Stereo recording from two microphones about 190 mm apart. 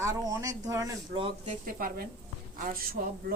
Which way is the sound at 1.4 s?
45° right (ahead or behind).